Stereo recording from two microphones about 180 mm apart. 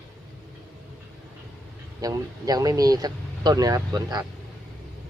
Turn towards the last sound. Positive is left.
turn(degrees=-20)  # may be behind; listen again after turning